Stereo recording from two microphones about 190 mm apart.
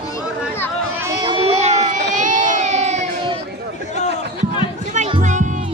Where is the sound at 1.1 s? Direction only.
25° right (ahead or behind).